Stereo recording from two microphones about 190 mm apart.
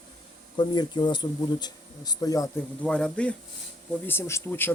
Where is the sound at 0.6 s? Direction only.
25° left (ahead or behind).